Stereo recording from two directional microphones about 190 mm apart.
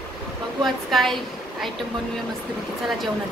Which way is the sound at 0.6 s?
Centre (ahead or behind).